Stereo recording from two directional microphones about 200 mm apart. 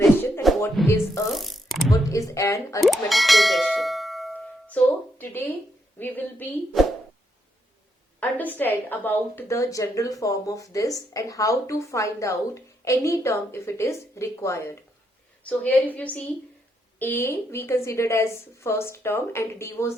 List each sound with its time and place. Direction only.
0.0 s music: 10° left (ahead or behind)
0.8 s speech: centre (ahead or behind)
1.3 s a sound: centre (ahead or behind)
1.9 s a woman's voice: 15° left (ahead or behind)
3.1 s bell: centre (ahead or behind)
6.0 s a woman's voice: 10° left (ahead or behind)
8.2 s a woman's voice: 10° left (ahead or behind)